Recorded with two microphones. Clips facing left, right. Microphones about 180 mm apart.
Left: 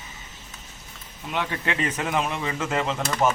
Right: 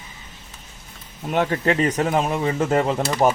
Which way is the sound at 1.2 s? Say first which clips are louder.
Right 8 dB; 45° right (ahead or behind).